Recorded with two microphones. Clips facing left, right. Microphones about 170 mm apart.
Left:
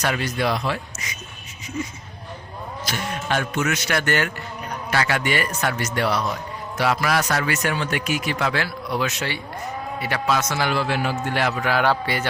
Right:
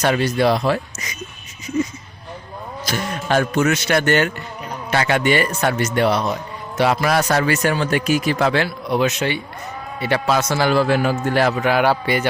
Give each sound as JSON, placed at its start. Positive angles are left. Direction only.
{"t": 0.0, "sound": "a man's voice", "side_deg": -30}
{"t": 2.8, "sound": "a man's voice", "side_deg": -40}
{"t": 8.6, "sound": "speech", "side_deg": -20}
{"t": 10.0, "sound": "a man's voice", "side_deg": -30}
{"t": 11.6, "sound": "a man's voice", "side_deg": -15}